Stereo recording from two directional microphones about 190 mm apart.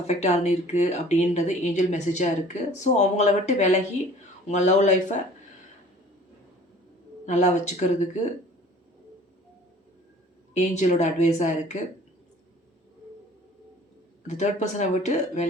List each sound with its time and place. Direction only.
0.1 s speech: 35° left (ahead or behind)
7.3 s speech: 40° left (ahead or behind)
10.5 s speech: 40° left (ahead or behind)
14.3 s speech: 35° left (ahead or behind)